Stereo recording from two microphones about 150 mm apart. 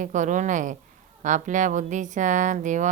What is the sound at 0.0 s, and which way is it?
Speech, 55° right (ahead or behind).